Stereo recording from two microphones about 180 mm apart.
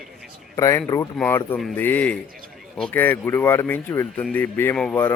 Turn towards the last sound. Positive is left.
turn(degrees=10)  # may be behind; listen again after turning